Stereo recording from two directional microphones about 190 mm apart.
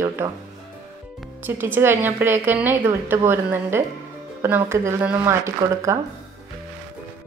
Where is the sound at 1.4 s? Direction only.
10° right (ahead or behind).